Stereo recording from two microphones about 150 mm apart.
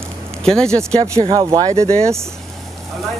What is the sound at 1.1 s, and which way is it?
Speech, 35° right (ahead or behind).